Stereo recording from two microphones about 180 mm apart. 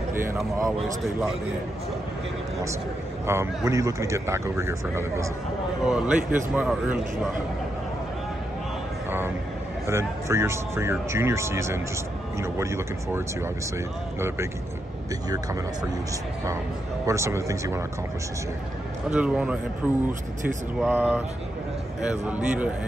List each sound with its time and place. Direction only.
0.1 s speech: 15° right (ahead or behind)
3.3 s speech: 15° right (ahead or behind)
5.9 s speech: 5° right (ahead or behind)
9.8 s speech: 15° right (ahead or behind)
15.2 s speech: 20° right (ahead or behind)
17.0 s speech: 15° right (ahead or behind)
19.0 s speech: 5° right (ahead or behind)